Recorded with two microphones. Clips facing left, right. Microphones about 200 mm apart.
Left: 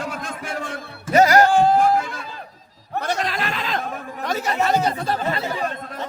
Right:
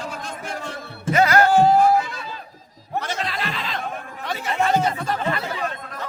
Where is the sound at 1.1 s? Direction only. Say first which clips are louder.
Left 3 dB; 40° left (ahead or behind).